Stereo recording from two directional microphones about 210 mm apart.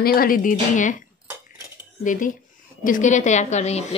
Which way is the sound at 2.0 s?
40° left (ahead or behind).